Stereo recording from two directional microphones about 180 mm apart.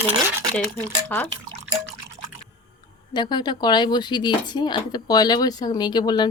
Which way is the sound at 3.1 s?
25° left (ahead or behind).